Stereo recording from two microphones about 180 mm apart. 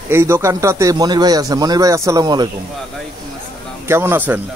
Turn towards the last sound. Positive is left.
turn(degrees=-10)  # may be behind; listen again after turning